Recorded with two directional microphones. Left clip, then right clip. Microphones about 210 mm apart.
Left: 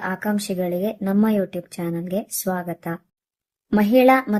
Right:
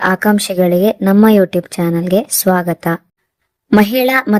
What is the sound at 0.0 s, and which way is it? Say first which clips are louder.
Speech: right 12 dB; 40° right (ahead or behind).